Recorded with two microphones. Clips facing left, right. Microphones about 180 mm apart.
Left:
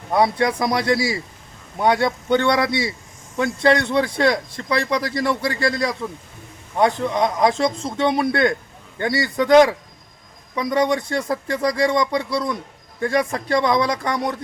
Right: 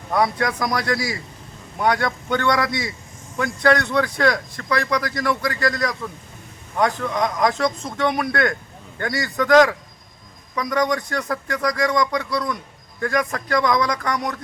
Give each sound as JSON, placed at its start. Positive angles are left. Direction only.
{"t": 0.1, "sound": "speech", "side_deg": 25}